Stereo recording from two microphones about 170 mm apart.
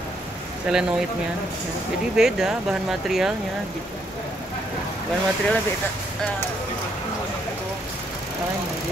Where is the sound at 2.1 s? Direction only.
5° right (ahead or behind).